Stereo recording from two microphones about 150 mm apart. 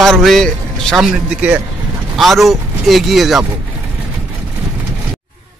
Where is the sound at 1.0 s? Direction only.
10° right (ahead or behind).